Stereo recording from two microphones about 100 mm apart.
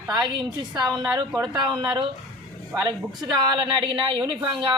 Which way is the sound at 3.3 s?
50° right (ahead or behind).